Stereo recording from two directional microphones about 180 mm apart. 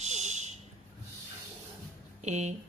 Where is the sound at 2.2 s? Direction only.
40° right (ahead or behind).